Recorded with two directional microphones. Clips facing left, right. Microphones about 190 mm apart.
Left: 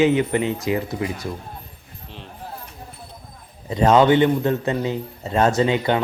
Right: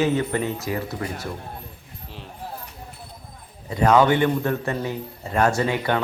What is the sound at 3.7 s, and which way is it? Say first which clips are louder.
A man's voice: left 3 dB; 20° left (ahead or behind).